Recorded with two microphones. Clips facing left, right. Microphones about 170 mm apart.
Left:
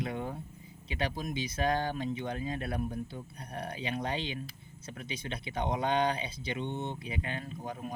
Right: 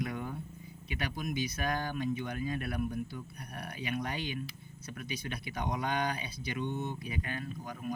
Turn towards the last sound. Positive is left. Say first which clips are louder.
# left 1 dB
turn(degrees=30)  # may be behind; listen again after turning